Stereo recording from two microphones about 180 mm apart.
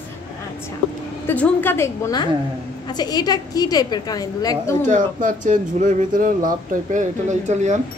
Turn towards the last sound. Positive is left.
turn(degrees=-40)  # may be behind; listen again after turning